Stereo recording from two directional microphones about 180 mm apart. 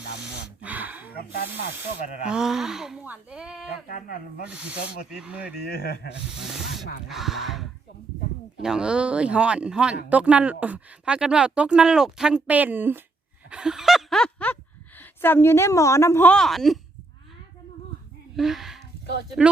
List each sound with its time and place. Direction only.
0.6 s a sound: 10° right (ahead or behind)
2.2 s speech: 5° right (ahead or behind)
3.8 s speech: 55° left (ahead or behind)
4.4 s speech: 5° right (ahead or behind)
5.6 s speech: 60° left (ahead or behind)
6.4 s a woman's voice: centre (ahead or behind)
18.3 s speech: centre (ahead or behind)